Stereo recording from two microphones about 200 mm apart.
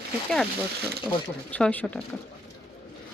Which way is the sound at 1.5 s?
5° left (ahead or behind).